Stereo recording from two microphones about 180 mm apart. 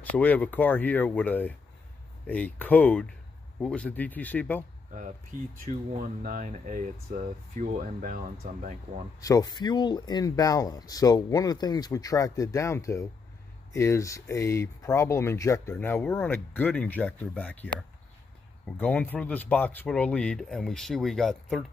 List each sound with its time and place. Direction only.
0.1 s speech: 10° left (ahead or behind)
5.7 s speech: 50° right (ahead or behind)
9.2 s speech: 20° left (ahead or behind); by 21.6 s centre (ahead or behind)